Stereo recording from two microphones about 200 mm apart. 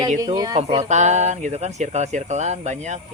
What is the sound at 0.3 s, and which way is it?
Speech, 20° right (ahead or behind).